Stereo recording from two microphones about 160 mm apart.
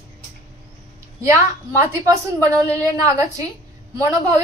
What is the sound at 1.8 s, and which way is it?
A woman's voice, 20° right (ahead or behind).